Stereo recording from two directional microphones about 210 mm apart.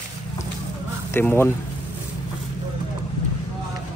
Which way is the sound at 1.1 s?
10° left (ahead or behind).